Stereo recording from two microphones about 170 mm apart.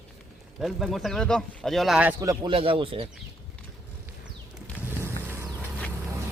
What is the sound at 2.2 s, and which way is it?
Speech, 20° right (ahead or behind).